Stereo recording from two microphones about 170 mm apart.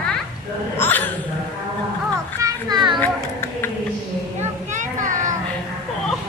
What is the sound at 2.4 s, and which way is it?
Children playing, 25° right (ahead or behind).